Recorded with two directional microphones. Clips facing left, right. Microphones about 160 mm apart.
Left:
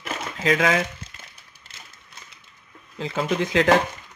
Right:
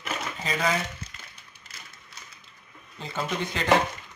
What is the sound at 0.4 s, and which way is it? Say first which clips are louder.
Speech: left 7 dB; 90° left.